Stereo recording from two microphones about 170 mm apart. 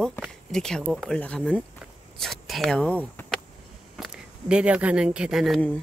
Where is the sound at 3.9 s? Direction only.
5° right (ahead or behind).